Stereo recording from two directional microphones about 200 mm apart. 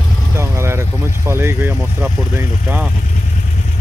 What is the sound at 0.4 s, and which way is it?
Speech, 15° right (ahead or behind).